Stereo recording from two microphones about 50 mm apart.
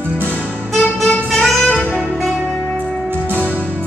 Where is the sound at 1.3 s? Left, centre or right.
Centre.